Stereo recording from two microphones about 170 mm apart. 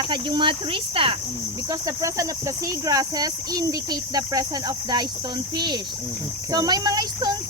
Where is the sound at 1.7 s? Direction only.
20° right (ahead or behind).